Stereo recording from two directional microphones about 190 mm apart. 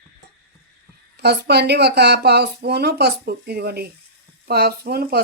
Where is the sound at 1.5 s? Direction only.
60° right (ahead or behind).